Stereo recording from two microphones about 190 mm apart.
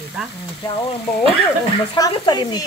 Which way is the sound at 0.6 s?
25° left (ahead or behind).